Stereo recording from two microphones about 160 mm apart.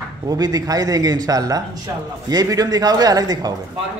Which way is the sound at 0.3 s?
25° right (ahead or behind).